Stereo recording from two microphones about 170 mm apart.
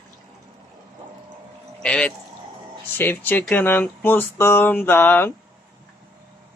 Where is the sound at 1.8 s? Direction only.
5° left (ahead or behind).